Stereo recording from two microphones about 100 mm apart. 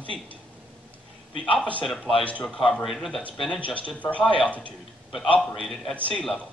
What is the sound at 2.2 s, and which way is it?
Speech, 10° left (ahead or behind).